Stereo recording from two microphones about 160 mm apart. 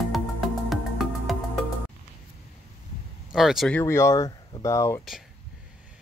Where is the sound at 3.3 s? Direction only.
Centre (ahead or behind).